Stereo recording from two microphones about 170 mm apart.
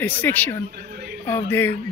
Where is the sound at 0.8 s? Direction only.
65° right (ahead or behind).